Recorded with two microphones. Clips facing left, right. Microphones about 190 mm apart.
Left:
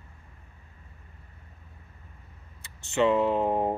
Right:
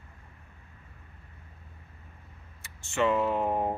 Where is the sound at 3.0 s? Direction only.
20° left (ahead or behind).